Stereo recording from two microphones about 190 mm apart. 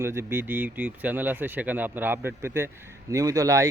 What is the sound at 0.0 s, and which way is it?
A man's voice, 15° right (ahead or behind).